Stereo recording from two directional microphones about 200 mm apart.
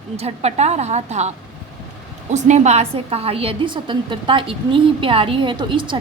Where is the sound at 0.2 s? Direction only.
30° right (ahead or behind).